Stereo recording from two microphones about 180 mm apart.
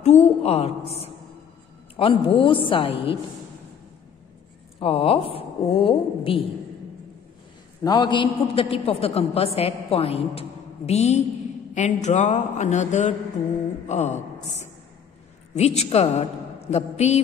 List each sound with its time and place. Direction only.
0.0 s a man's voice: 35° left (ahead or behind)
4.7 s a man's voice: 30° left (ahead or behind)
7.8 s a man's voice: 25° left (ahead or behind); by 14.2 s 40° left (ahead or behind)
15.5 s a man's voice: 35° left (ahead or behind)